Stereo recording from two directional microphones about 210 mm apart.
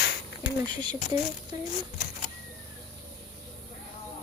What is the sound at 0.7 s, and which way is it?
Speech, 20° right (ahead or behind).